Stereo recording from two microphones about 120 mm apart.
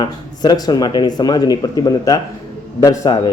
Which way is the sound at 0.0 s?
35° left (ahead or behind).